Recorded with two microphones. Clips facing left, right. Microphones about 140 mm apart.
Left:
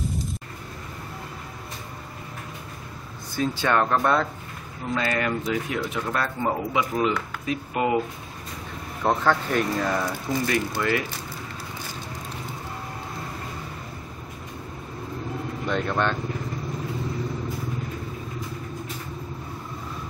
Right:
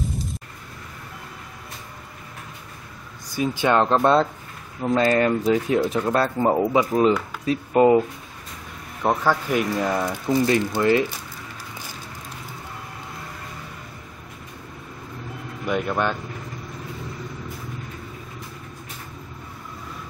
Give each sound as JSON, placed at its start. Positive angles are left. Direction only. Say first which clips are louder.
{"t": 3.3, "sound": "speech", "louder": "right 3 dB", "side_deg": -15}
{"t": 4.9, "sound": "speech", "louder": "right 7 dB", "side_deg": -40}
{"t": 9.0, "sound": "speech", "louder": "right 1 dB", "side_deg": -10}
{"t": 9.9, "sound": "speech", "louder": "right 4 dB", "side_deg": -20}
{"t": 15.6, "sound": "speech", "louder": "right 2 dB", "side_deg": -10}